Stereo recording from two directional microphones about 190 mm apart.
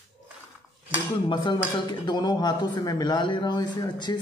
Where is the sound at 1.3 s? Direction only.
25° left (ahead or behind).